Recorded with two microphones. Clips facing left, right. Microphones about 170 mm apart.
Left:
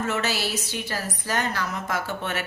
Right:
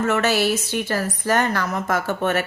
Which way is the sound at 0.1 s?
55° right (ahead or behind).